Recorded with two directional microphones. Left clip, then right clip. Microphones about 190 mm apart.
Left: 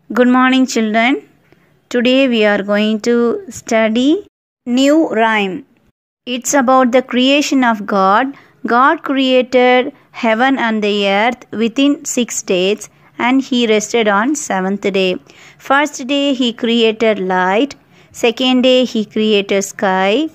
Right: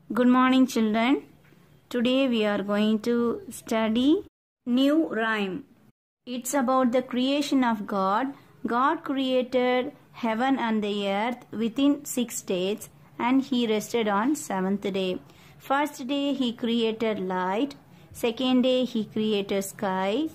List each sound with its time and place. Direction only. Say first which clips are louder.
0.1 s speech: left 10 dB; 20° left (ahead or behind)